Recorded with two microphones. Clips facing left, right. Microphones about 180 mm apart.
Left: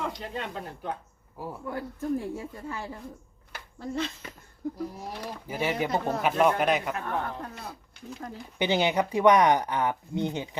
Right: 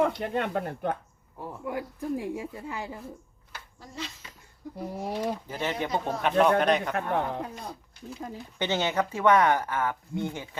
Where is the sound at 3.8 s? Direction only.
60° left (ahead or behind).